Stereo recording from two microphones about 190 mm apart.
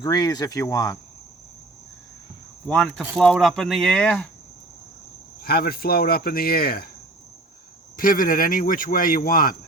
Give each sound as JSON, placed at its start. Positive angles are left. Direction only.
{"t": 0.0, "sound": "speech", "side_deg": 20}
{"t": 2.6, "sound": "speech", "side_deg": 5}
{"t": 5.4, "sound": "speech", "side_deg": 50}
{"t": 7.9, "sound": "speech", "side_deg": 45}